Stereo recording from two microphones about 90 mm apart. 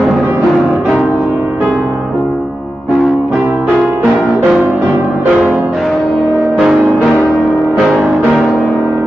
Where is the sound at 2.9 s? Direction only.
5° left (ahead or behind).